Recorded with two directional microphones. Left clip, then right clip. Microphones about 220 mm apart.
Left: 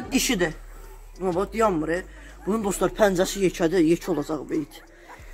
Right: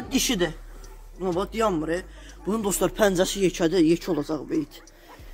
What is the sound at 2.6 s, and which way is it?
Speech, 15° right (ahead or behind).